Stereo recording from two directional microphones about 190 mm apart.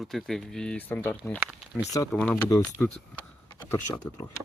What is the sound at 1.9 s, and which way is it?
Speech, 20° left (ahead or behind).